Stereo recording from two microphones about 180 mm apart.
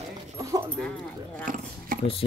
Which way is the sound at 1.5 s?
50° right (ahead or behind).